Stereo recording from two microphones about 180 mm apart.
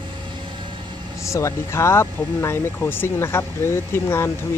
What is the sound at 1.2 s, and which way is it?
Speech, 15° left (ahead or behind).